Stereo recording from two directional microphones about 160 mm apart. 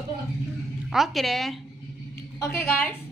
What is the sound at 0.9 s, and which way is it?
Speech, centre (ahead or behind).